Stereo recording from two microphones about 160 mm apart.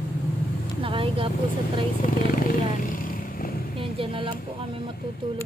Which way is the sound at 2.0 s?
60° left (ahead or behind).